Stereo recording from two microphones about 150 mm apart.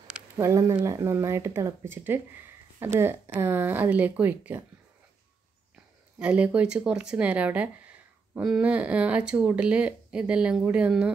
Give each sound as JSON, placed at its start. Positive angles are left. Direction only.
{"t": 0.4, "sound": "speech", "side_deg": -20}
{"t": 6.1, "sound": "speech", "side_deg": -10}